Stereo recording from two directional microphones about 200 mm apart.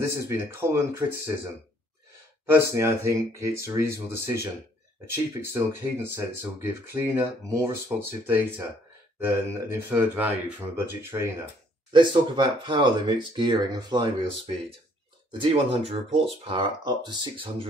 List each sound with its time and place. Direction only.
0.0 s speech: 15° right (ahead or behind)
2.7 s speech: 15° right (ahead or behind)
5.5 s speech: 10° right (ahead or behind)
11.9 s speech: 25° right (ahead or behind)
15.4 s speech: 30° right (ahead or behind)